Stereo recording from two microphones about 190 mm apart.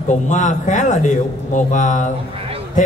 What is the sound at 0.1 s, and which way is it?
Speech, 40° left (ahead or behind).